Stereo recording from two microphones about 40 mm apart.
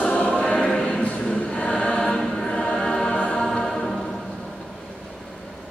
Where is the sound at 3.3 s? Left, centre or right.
Centre.